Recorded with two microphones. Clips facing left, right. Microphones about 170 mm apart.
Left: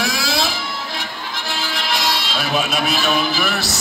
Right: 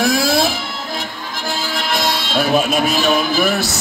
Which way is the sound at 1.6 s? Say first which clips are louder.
Right 3 dB; 50° right (ahead or behind).